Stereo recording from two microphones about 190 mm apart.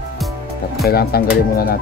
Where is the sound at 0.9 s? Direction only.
55° left (ahead or behind).